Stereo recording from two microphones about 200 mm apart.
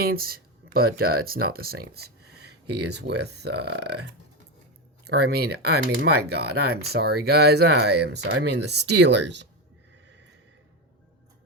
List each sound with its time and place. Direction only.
0.0 s speech: 50° right (ahead or behind)